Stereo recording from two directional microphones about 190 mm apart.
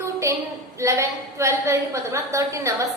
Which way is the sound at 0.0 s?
15° right (ahead or behind).